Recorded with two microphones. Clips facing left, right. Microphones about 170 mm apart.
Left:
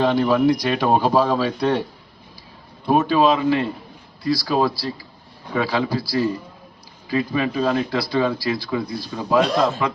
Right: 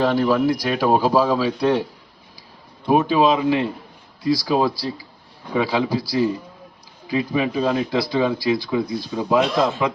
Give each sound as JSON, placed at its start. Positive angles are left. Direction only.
{"t": 0.0, "sound": "speech", "side_deg": -5}
{"t": 2.9, "sound": "speech", "side_deg": -15}
{"t": 9.8, "sound": "speech", "side_deg": -5}